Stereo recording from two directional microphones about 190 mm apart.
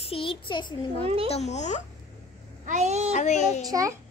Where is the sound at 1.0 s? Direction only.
30° right (ahead or behind).